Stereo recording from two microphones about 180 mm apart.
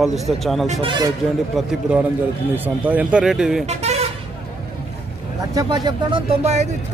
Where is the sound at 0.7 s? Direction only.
30° right (ahead or behind).